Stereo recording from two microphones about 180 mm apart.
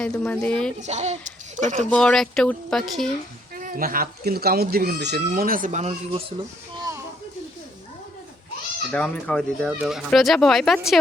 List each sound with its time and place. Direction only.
0.0 s speech: 5° left (ahead or behind)
0.8 s a child's voice: 40° right (ahead or behind)
1.9 s speech: 5° left (ahead or behind)
3.5 s speech: 50° right (ahead or behind)
8.9 s speech: 5° left (ahead or behind)